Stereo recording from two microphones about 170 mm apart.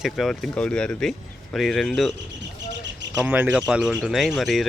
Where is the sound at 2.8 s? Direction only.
90° right.